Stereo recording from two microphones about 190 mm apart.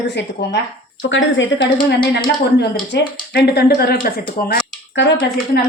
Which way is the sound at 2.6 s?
60° left (ahead or behind).